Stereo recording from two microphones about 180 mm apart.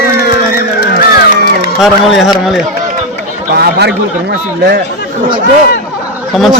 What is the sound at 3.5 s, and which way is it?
Speech, 65° right (ahead or behind).